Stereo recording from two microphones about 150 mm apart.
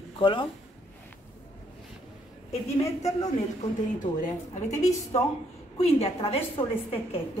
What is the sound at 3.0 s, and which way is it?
Speech, 25° left (ahead or behind).